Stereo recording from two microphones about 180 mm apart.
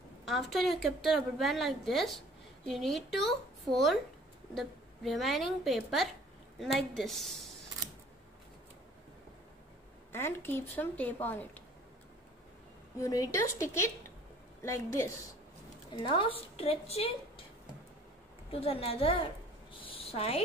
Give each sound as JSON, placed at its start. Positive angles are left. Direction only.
{"t": 0.2, "sound": "a woman's voice", "side_deg": 0}
{"t": 10.1, "sound": "speech", "side_deg": 10}
{"t": 13.0, "sound": "speech", "side_deg": 20}
{"t": 15.9, "sound": "a woman's voice", "side_deg": 25}
{"t": 18.5, "sound": "a woman's voice", "side_deg": 30}